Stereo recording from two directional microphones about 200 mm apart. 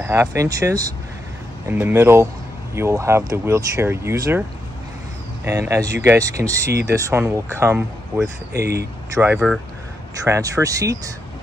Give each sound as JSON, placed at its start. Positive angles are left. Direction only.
{"t": 0.0, "sound": "speech", "side_deg": -10}
{"t": 8.5, "sound": "speech", "side_deg": -55}
{"t": 9.1, "sound": "speech", "side_deg": -10}